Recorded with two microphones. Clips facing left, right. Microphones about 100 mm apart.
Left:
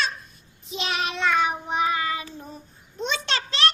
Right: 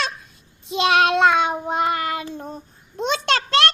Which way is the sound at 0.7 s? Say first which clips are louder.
Right 11 dB; 85° right.